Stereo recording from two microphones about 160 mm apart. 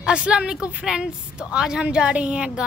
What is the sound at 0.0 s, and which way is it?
A woman's voice, 5° right (ahead or behind).